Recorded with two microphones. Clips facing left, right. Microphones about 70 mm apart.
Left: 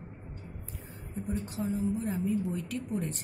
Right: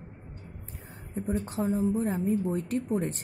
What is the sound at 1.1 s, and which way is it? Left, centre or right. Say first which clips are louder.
A woman's voice: right 5 dB; right.